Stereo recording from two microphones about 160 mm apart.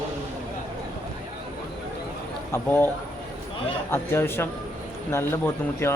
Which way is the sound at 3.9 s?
15° left (ahead or behind).